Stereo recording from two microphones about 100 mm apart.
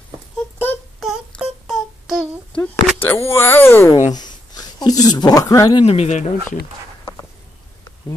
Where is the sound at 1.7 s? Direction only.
5° left (ahead or behind).